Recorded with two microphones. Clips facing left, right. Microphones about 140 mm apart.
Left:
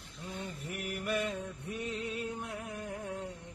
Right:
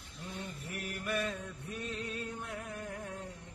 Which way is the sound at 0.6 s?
25° left (ahead or behind).